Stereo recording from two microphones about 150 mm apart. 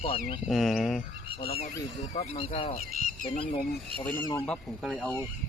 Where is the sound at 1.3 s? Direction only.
40° left (ahead or behind).